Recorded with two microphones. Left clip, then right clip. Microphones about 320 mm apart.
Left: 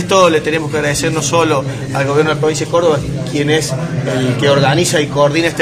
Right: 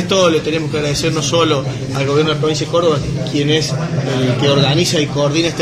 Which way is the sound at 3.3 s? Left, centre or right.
Left.